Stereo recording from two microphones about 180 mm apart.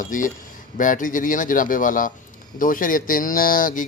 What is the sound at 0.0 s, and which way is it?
Speech, 45° left (ahead or behind).